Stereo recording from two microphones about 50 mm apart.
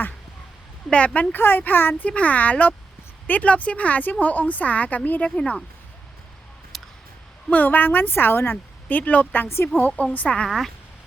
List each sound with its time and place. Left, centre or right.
0.9 s speech: left
1.4 s a woman's voice: left
2.0 s a woman's voice: left
5.4 s speech: centre
6.7 s a sound: centre
7.5 s a woman's voice: left
8.9 s a woman's voice: left